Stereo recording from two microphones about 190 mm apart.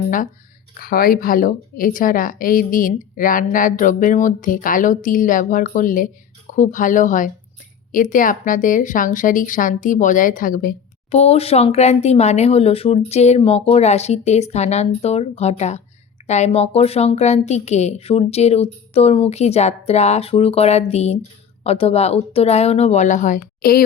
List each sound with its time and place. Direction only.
0.8 s a woman's voice: 50° left (ahead or behind)
11.1 s a woman's voice: 35° left (ahead or behind)